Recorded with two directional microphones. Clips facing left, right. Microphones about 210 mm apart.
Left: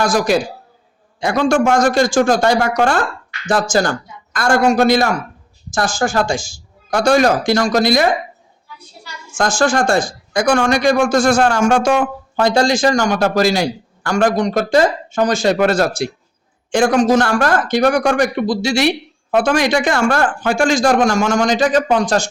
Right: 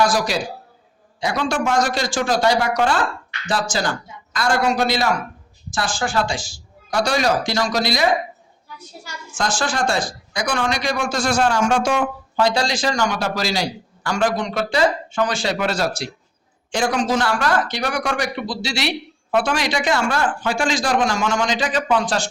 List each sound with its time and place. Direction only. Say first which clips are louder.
0.0 s a man's voice: left 4 dB; 50° left (ahead or behind)
9.4 s a man's voice: left 7 dB; 50° left (ahead or behind)